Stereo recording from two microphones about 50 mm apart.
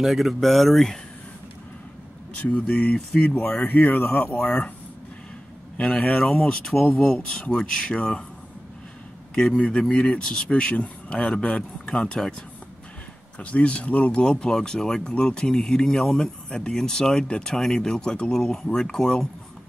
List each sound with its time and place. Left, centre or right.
0.0 s speech: centre
2.6 s speech: centre
3.6 s speech: left
5.9 s speech: left
6.1 s speech: centre
9.7 s speech: centre
13.4 s speech: left; by 16.3 s centre
16.4 s speech: centre